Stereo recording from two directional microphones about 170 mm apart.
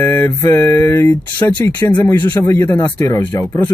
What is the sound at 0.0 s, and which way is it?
Mantra, 15° left (ahead or behind).